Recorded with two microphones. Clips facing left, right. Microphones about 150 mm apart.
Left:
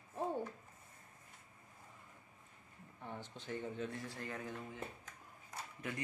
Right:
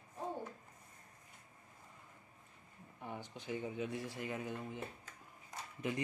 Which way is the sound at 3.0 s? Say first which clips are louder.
Right 2 dB; 10° right (ahead or behind).